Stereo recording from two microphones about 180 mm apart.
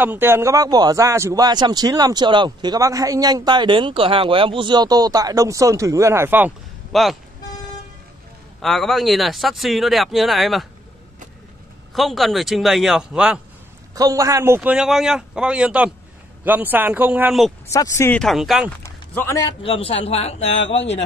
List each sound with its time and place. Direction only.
0.0 s a man's voice: 10° right (ahead or behind)
6.9 s speech: centre (ahead or behind)
8.5 s speech: centre (ahead or behind)
11.9 s speech: centre (ahead or behind)
13.9 s speech: 20° right (ahead or behind)
17.6 s speech: 15° left (ahead or behind)
18.2 s speech: centre (ahead or behind)
18.8 s a sound: 15° left (ahead or behind)
19.6 s speech: 30° left (ahead or behind)
20.6 s speech: 85° left